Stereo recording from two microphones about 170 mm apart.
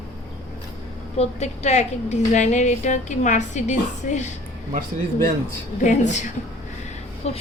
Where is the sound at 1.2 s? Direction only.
40° left (ahead or behind).